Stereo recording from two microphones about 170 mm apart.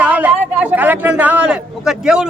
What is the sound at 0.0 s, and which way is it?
A man's voice, 10° right (ahead or behind).